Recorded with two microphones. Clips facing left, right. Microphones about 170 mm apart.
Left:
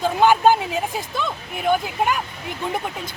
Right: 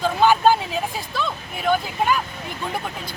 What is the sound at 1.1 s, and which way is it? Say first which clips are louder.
Speech: even; 20° left (ahead or behind).